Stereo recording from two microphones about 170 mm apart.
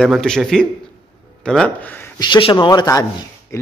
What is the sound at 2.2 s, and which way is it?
Speech, 30° left (ahead or behind).